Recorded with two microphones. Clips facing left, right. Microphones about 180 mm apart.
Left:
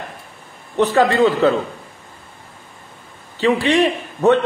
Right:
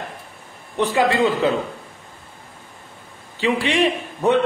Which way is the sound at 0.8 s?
10° right (ahead or behind).